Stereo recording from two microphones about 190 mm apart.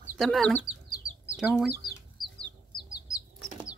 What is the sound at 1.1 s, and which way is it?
Chicken, 90° left.